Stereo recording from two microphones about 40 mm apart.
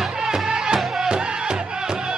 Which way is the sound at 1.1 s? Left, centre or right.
Right.